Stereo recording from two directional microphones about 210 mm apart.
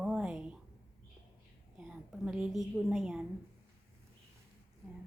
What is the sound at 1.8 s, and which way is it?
A woman's voice, 5° right (ahead or behind).